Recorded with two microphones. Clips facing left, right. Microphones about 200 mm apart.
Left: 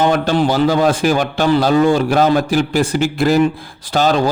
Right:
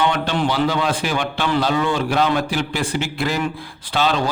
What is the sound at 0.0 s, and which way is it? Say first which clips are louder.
A man's voice: left 5 dB; 40° left (ahead or behind).